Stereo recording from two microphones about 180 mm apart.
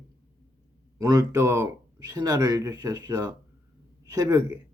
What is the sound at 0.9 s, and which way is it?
Speech, 20° right (ahead or behind).